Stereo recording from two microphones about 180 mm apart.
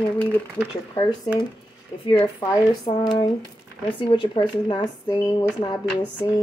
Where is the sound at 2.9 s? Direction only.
35° left (ahead or behind).